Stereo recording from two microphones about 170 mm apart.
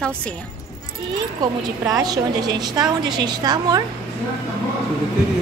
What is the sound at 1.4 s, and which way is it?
A woman's voice, 20° right (ahead or behind).